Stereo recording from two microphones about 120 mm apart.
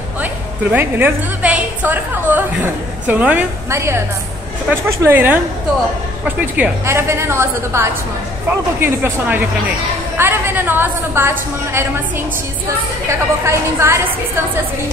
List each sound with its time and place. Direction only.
0.2 s a woman's voice: 15° right (ahead or behind)
3.7 s a woman's voice: 20° right (ahead or behind)
13.1 s a woman's voice: 20° right (ahead or behind)